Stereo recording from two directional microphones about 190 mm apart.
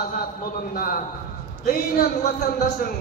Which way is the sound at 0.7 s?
50° left (ahead or behind).